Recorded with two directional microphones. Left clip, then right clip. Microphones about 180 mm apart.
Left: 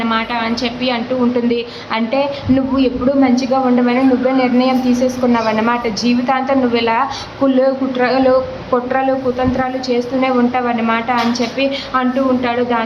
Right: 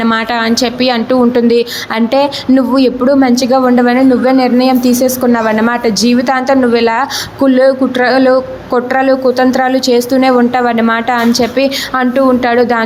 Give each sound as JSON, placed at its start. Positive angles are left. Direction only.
{"t": 0.1, "sound": "a woman's voice", "side_deg": -40}